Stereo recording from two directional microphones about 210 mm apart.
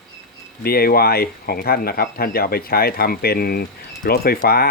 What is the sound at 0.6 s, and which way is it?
Speech, 45° left (ahead or behind).